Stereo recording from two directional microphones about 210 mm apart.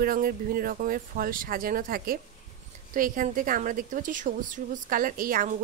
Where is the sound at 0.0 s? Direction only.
45° right (ahead or behind).